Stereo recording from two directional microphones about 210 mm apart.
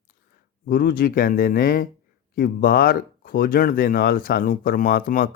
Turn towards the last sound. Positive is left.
turn(degrees=40)  # may be behind; listen again after turning